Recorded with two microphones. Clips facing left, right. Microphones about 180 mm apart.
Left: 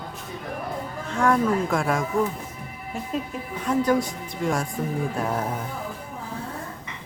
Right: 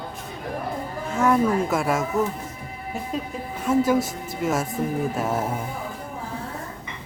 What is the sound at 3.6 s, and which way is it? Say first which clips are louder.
Speech: right 2 dB; 5° right (ahead or behind).